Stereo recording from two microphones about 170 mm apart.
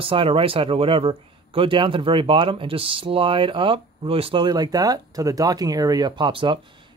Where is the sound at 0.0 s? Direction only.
30° right (ahead or behind).